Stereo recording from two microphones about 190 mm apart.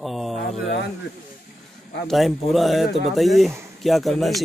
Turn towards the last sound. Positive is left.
turn(degrees=0)  # may be behind; listen again after turning